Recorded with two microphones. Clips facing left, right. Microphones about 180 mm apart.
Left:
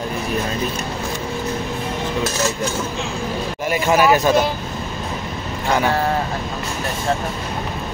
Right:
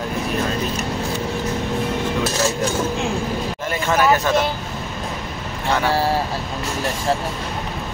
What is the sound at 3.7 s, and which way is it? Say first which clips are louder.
Speech: left 3 dB; 10° left (ahead or behind).